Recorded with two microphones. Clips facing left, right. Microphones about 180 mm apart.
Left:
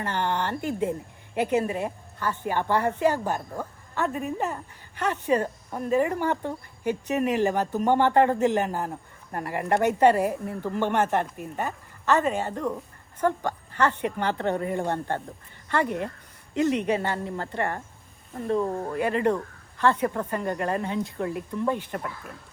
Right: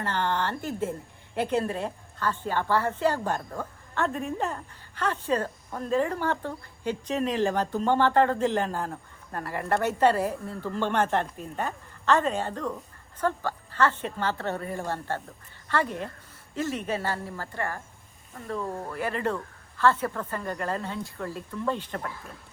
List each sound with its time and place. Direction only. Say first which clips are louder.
0.0 s speech: left 1 dB; 15° left (ahead or behind)